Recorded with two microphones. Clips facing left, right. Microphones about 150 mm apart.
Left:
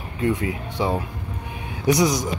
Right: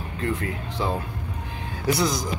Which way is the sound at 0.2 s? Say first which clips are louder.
Left 5 dB; 15° left (ahead or behind).